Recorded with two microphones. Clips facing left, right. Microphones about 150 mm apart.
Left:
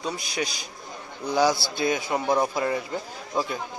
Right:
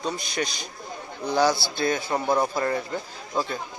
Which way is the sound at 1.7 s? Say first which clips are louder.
Even; 10° left (ahead or behind).